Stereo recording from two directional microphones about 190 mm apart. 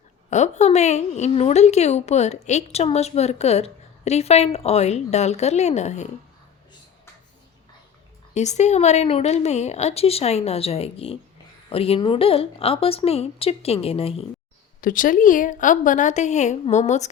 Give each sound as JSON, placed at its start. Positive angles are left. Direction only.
{"t": 0.3, "sound": "a woman's voice", "side_deg": 40}
{"t": 8.3, "sound": "a woman's voice", "side_deg": 35}
{"t": 14.8, "sound": "a woman's voice", "side_deg": 45}